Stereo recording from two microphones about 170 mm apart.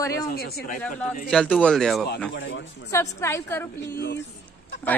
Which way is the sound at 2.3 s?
90° left.